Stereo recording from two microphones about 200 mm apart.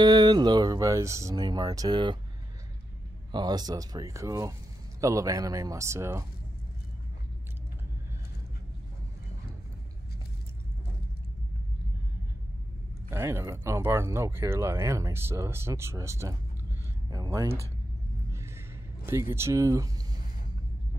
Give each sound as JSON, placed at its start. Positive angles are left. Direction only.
{"t": 0.0, "sound": "speech", "side_deg": -20}
{"t": 3.3, "sound": "speech", "side_deg": -20}
{"t": 13.1, "sound": "speech", "side_deg": -15}
{"t": 19.0, "sound": "speech", "side_deg": -15}